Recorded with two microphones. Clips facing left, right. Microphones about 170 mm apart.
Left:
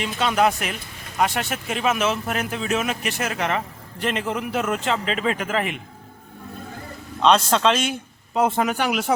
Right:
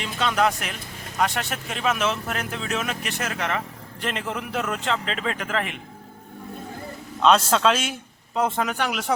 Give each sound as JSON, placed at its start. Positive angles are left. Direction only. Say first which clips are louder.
{"t": 0.0, "sound": "a man's voice", "louder": "left 2 dB", "side_deg": 10}
{"t": 3.3, "sound": "a man's voice", "louder": "left 2 dB", "side_deg": 25}
{"t": 4.0, "sound": "a man's voice", "louder": "left 4 dB", "side_deg": 0}
{"t": 7.2, "sound": "a man's voice", "louder": "left 1 dB", "side_deg": -5}
{"t": 8.4, "sound": "a man's voice", "louder": "left 3 dB", "side_deg": 10}